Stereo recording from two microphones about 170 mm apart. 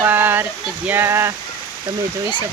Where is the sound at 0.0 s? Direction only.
10° right (ahead or behind).